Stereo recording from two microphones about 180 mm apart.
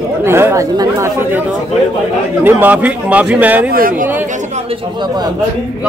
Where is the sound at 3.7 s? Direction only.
50° right (ahead or behind).